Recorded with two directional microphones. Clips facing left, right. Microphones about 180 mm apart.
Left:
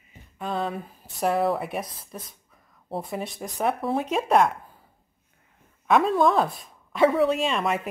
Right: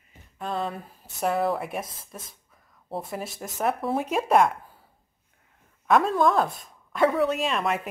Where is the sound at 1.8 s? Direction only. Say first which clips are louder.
Left 3 dB; 25° right (ahead or behind).